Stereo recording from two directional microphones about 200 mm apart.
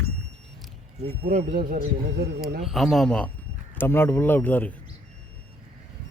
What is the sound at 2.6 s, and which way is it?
Speech, centre (ahead or behind).